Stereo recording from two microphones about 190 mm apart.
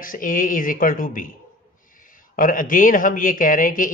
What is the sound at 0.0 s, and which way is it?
Speech, 45° left (ahead or behind).